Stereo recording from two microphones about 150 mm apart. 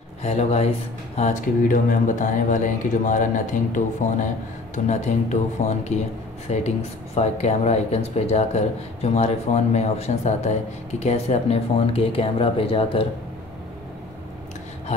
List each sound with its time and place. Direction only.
0.2 s speech: 50° left (ahead or behind)